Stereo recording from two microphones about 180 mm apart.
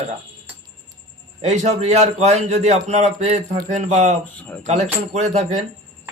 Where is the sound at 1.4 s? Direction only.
40° right (ahead or behind).